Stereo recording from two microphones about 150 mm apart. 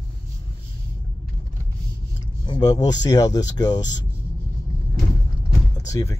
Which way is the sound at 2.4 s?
25° left (ahead or behind).